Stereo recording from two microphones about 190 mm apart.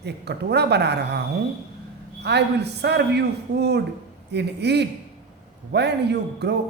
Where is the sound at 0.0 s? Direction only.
60° right (ahead or behind).